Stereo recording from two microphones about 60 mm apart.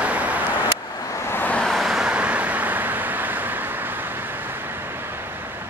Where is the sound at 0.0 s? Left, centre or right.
Right.